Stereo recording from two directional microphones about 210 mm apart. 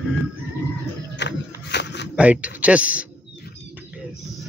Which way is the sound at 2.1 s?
5° right (ahead or behind).